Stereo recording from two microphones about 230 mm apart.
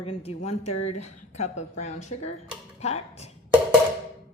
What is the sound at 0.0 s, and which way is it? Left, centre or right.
Speech, left.